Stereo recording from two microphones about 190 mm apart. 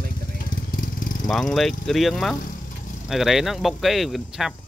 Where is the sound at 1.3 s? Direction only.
Centre (ahead or behind).